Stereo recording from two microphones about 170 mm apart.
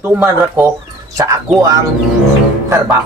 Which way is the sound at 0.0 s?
10° right (ahead or behind).